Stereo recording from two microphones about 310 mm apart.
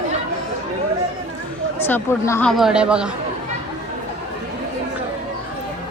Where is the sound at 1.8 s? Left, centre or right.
Centre.